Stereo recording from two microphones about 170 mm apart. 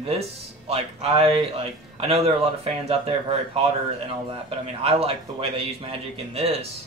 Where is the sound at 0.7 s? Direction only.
35° right (ahead or behind).